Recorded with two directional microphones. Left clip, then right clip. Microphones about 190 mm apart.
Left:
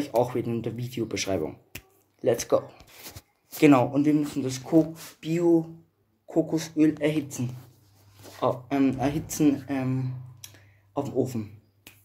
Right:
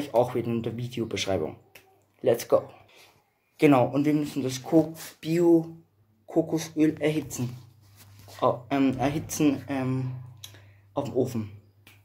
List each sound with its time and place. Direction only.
0.0 s speech: 5° left (ahead or behind)
5.2 s speech: 10° right (ahead or behind)
6.2 s speech: centre (ahead or behind)